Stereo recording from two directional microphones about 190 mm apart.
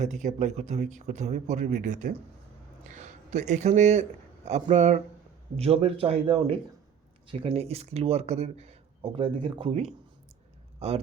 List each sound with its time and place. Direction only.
0.0 s speech: 40° right (ahead or behind)